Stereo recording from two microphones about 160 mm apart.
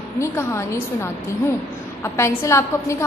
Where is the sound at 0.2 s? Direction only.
15° left (ahead or behind).